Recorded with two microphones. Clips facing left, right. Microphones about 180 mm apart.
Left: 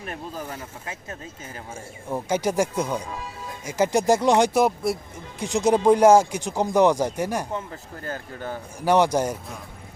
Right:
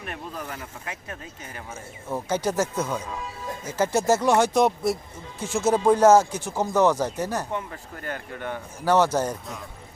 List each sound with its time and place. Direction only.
0.0 s speech: 30° left (ahead or behind)
2.0 s speech: 10° left (ahead or behind)
4.5 s speech: centre (ahead or behind)
5.4 s speech: 15° left (ahead or behind)
7.5 s speech: 30° left (ahead or behind)
8.8 s speech: 15° left (ahead or behind)